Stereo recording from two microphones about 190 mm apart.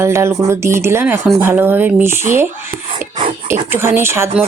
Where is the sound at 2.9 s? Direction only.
40° right (ahead or behind).